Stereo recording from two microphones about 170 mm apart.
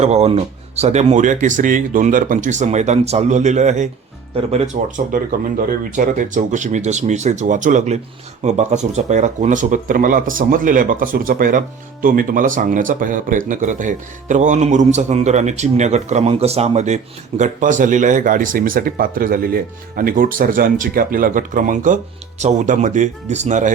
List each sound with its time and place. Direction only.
0.0 s speech: 40° right (ahead or behind)